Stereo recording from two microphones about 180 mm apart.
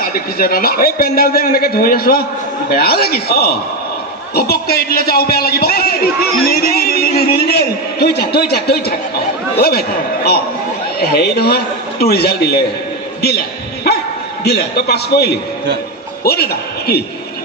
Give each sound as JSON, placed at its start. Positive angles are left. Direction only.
{"t": 0.0, "sound": "a man's voice", "side_deg": 55}
{"t": 14.4, "sound": "a man's voice", "side_deg": 60}